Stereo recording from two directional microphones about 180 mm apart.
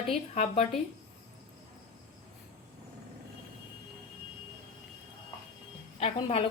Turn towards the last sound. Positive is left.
turn(degrees=35)  # may be behind; listen again after turning